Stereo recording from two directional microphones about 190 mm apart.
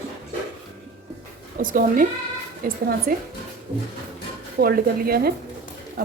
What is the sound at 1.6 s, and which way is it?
A woman's voice, 45° right (ahead or behind).